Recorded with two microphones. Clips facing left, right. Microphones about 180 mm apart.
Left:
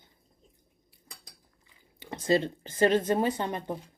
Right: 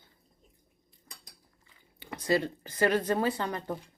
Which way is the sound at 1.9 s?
20° left (ahead or behind).